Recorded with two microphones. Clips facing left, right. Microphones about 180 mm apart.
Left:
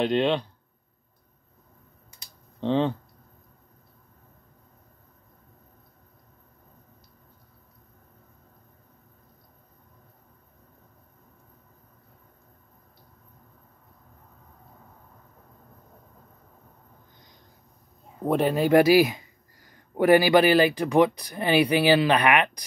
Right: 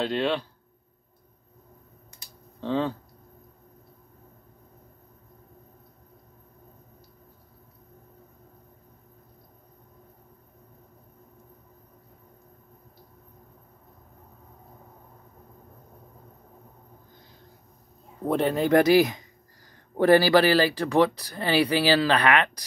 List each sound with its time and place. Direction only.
0.0 s speech: 20° left (ahead or behind)
2.6 s speech: 20° left (ahead or behind)
18.2 s speech: 10° left (ahead or behind)